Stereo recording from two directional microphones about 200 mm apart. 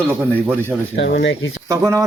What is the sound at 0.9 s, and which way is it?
Speech, 65° left (ahead or behind).